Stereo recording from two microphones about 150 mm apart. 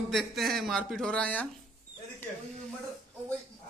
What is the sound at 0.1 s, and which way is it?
Speech, centre (ahead or behind).